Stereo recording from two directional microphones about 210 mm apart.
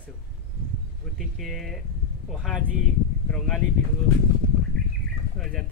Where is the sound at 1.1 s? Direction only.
Centre (ahead or behind).